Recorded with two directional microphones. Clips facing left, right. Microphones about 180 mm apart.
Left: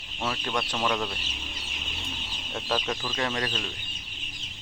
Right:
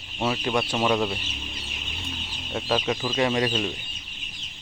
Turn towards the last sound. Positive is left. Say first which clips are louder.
# right 7 dB
turn(degrees=-15)  # may be behind; listen again after turning